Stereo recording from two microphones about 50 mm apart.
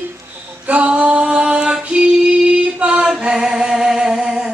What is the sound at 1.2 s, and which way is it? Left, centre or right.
Music, centre.